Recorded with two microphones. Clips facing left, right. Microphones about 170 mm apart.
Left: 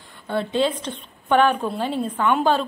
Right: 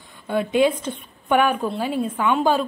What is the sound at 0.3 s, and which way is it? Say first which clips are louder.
A woman's voice: right 3 dB; 10° right (ahead or behind).